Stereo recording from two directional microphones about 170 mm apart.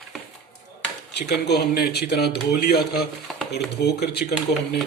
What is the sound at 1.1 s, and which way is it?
Speech, 80° left.